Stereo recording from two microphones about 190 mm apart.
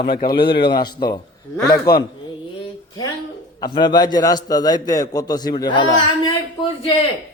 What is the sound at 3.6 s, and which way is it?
A man's voice, 20° left (ahead or behind).